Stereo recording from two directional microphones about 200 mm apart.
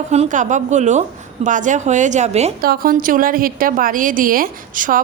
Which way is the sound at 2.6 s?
50° right (ahead or behind).